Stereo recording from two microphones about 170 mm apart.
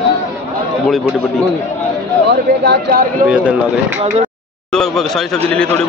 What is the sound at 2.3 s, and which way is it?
Speech, 75° right (ahead or behind).